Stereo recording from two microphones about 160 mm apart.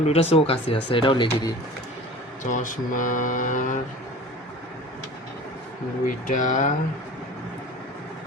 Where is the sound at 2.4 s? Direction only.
55° left (ahead or behind).